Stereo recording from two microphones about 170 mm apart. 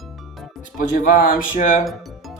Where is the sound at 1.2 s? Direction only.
50° left (ahead or behind).